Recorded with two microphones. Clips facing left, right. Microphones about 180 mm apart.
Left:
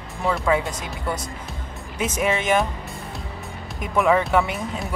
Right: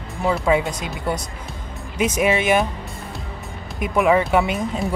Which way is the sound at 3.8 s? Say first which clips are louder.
Right 2 dB; 15° right (ahead or behind).